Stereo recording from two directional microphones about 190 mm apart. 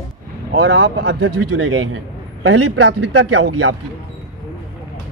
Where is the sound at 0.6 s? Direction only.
70° right (ahead or behind); by 3.7 s 90° right.